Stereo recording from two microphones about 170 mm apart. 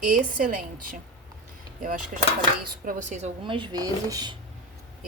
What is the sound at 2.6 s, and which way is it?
Speech, 50° right (ahead or behind).